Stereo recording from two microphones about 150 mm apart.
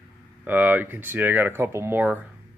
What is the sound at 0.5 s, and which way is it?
Speech, 10° right (ahead or behind).